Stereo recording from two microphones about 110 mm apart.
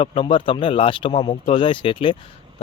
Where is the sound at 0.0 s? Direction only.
55° left (ahead or behind).